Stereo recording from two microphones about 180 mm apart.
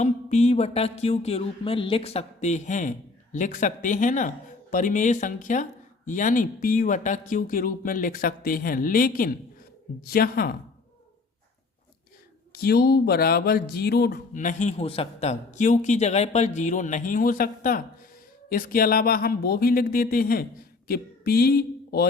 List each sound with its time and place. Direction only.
0.0 s a man's voice: 40° left (ahead or behind); by 10.5 s 55° left (ahead or behind)
12.5 s speech: 60° left (ahead or behind)
14.3 s a man's voice: 40° left (ahead or behind); by 22.0 s 60° left (ahead or behind)